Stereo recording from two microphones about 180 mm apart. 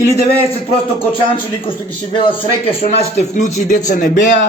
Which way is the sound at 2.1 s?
30° left (ahead or behind).